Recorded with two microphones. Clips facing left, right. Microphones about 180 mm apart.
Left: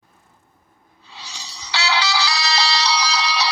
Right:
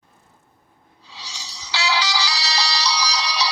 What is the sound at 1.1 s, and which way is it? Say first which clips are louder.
Music: left 1 dB; 55° left (ahead or behind).